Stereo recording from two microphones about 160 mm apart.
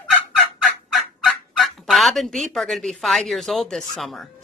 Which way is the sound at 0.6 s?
Centre (ahead or behind).